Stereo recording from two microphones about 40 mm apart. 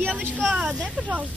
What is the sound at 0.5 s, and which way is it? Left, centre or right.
Speech, centre.